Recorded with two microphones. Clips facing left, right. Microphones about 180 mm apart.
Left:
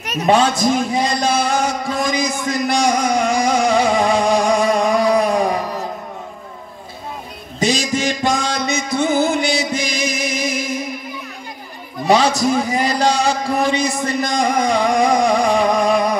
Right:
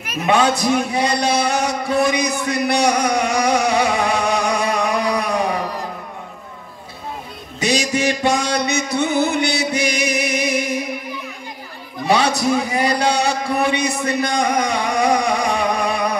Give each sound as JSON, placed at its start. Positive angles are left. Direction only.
{"t": 0.6, "sound": "speech", "side_deg": -65}
{"t": 7.6, "sound": "music", "side_deg": -65}
{"t": 12.2, "sound": "a sound", "side_deg": -60}